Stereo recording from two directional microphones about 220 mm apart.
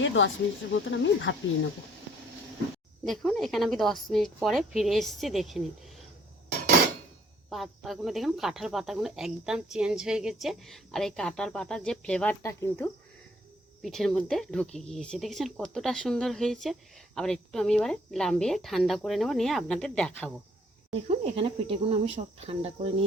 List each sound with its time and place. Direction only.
0.0 s speech: 55° left (ahead or behind)
3.0 s speech: centre (ahead or behind)
7.5 s speech: centre (ahead or behind)
13.8 s speech: centre (ahead or behind)
20.9 s speech: 30° right (ahead or behind)